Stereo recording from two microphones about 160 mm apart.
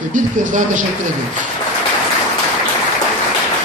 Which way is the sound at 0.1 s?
55° right (ahead or behind).